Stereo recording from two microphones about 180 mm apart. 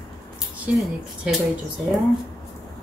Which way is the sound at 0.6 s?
5° right (ahead or behind).